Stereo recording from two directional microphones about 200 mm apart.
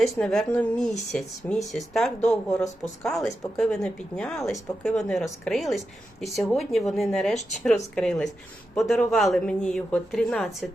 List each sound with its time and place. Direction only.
0.0 s speech: centre (ahead or behind)